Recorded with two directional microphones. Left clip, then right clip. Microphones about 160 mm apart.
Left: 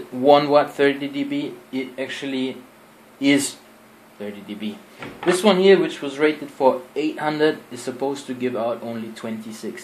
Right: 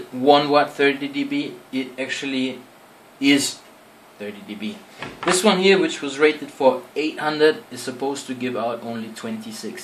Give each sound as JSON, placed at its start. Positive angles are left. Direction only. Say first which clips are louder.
{"t": 0.2, "sound": "speech", "louder": "left 1 dB", "side_deg": 30}
{"t": 5.4, "sound": "speech", "louder": "left 2 dB", "side_deg": 30}